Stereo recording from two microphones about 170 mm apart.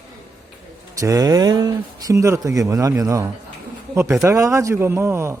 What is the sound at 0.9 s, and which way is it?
Speech, 20° right (ahead or behind).